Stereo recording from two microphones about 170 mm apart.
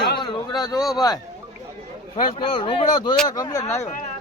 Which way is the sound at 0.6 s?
20° left (ahead or behind).